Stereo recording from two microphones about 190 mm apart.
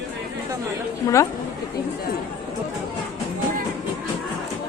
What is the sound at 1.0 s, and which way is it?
Speech, 15° left (ahead or behind).